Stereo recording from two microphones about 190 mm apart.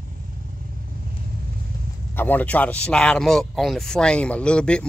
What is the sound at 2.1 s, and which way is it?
Speech, 10° left (ahead or behind).